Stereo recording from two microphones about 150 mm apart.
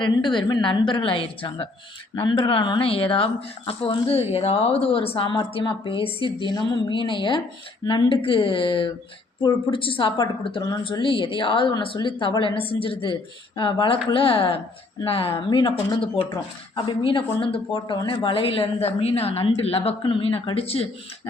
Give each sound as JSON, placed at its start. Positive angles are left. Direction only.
{"t": 0.0, "sound": "speech", "side_deg": 30}